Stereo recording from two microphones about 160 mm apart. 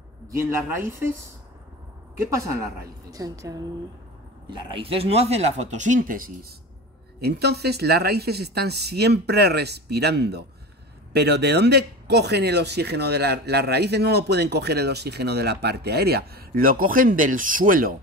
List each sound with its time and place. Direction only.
0.3 s speech: 15° right (ahead or behind)
2.4 s a woman's voice: 20° right (ahead or behind); by 6.3 s 60° right (ahead or behind)
7.2 s speech: 90° right; by 17.9 s 60° right (ahead or behind)